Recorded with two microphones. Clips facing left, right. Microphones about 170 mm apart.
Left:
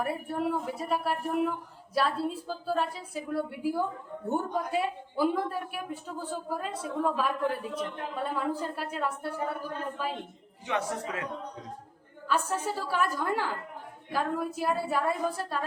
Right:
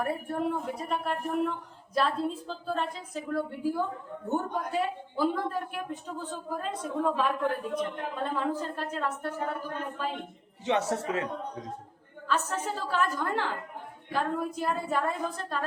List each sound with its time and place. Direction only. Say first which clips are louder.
0.0 s speech: even; 5° left (ahead or behind)
10.7 s a man's voice: right 4 dB; 25° right (ahead or behind)
12.3 s speech: left 1 dB; 10° left (ahead or behind)